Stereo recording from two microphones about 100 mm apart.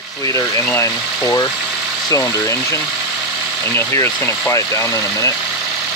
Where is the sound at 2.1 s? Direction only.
35° left (ahead or behind).